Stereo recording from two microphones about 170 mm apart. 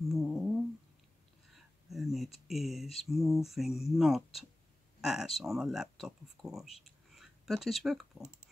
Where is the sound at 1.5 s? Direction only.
Centre (ahead or behind).